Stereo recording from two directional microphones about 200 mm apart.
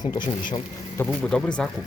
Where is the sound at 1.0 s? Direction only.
5° left (ahead or behind).